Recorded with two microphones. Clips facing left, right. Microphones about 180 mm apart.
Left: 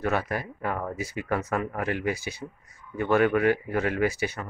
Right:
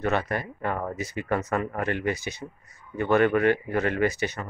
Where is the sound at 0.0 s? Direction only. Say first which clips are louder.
Right 1 dB; 10° left (ahead or behind).